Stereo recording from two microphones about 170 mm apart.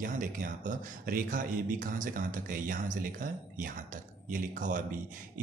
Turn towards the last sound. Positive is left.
turn(degrees=-50)  # may be behind; listen again after turning